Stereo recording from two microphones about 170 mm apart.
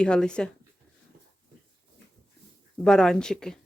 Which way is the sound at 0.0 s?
5° left (ahead or behind).